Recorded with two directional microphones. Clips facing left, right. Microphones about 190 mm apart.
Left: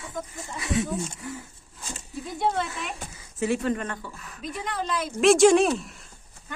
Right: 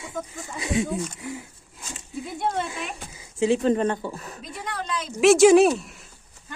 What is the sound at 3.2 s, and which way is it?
Speech, 15° right (ahead or behind).